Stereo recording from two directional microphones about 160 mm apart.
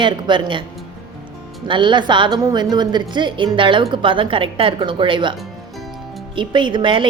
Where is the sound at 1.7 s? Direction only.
30° right (ahead or behind).